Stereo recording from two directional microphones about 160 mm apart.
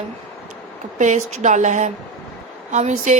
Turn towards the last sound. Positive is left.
turn(degrees=-50)  # may be behind; listen again after turning